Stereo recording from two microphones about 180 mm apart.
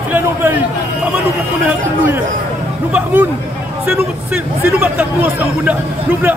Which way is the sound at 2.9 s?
10° right (ahead or behind).